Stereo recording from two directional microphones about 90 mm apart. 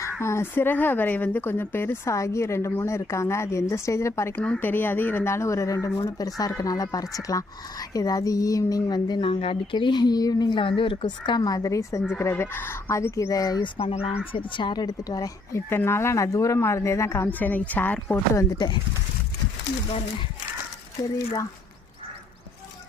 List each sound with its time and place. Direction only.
0.0 s a woman's voice: 30° left (ahead or behind)
4.4 s a woman's voice: 15° left (ahead or behind); by 9.2 s 50° left (ahead or behind)
9.2 s speech: 90° left
9.7 s a woman's voice: 55° left (ahead or behind)
11.4 s speech: 40° left (ahead or behind)
13.7 s speech: 90° left
14.5 s a woman's voice: 55° left (ahead or behind)
15.7 s speech: 25° left (ahead or behind)
17.2 s a woman's voice: 20° left (ahead or behind)
18.5 s a woman's voice: 50° left (ahead or behind)
19.9 s speech: 90° left